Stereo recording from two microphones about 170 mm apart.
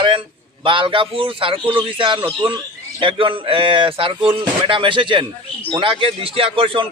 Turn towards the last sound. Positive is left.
turn(degrees=-30)  # may be behind; listen again after turning